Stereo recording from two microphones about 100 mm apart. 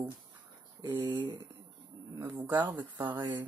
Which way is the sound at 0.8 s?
45° right (ahead or behind).